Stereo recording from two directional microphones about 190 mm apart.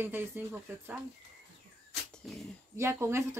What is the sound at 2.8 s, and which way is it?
Speech, 15° right (ahead or behind).